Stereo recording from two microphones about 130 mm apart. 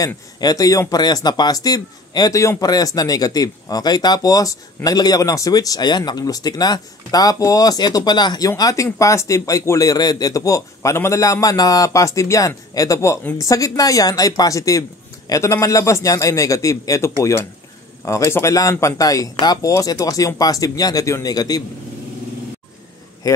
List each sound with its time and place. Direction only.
0.0 s speech: 30° left (ahead or behind)